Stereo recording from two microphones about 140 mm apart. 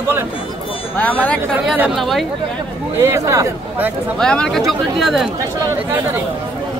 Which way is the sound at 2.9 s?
20° right (ahead or behind).